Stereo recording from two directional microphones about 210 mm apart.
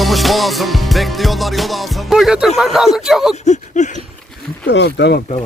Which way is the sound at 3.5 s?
35° left (ahead or behind).